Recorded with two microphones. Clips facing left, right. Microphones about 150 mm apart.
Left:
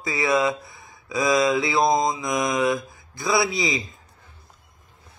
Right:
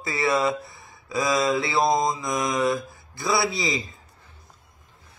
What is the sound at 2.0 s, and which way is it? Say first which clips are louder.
Mantra: left 1 dB; 20° left (ahead or behind).